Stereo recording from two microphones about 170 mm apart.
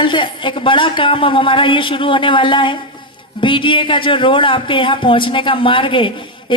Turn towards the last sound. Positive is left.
turn(degrees=30)  # may be behind; listen again after turning